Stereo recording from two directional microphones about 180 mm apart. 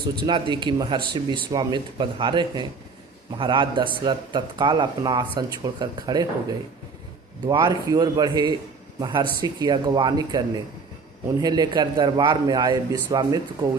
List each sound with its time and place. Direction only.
0.3 s speech: 25° right (ahead or behind)
7.4 s speech: 25° right (ahead or behind)